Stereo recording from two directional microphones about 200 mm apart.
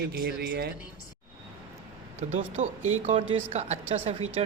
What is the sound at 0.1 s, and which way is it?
Speech, 55° right (ahead or behind).